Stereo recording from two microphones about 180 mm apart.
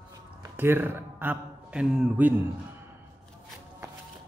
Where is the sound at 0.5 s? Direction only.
10° right (ahead or behind).